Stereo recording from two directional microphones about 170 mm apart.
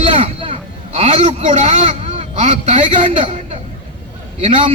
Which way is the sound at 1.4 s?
45° right (ahead or behind).